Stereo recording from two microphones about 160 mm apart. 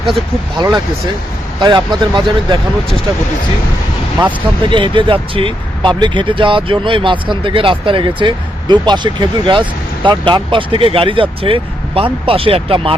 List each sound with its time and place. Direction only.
1.5 s speech: 30° right (ahead or behind)
4.3 s speech: 30° right (ahead or behind)